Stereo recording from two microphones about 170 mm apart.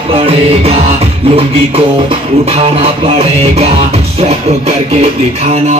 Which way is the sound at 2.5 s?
40° right (ahead or behind).